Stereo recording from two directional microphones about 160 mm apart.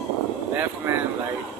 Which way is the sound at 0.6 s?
15° right (ahead or behind).